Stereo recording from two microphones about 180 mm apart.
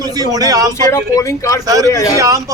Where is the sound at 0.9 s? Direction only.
20° left (ahead or behind).